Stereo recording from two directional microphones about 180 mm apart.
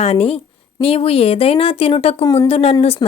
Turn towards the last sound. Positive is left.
turn(degrees=35)  # may be behind; listen again after turning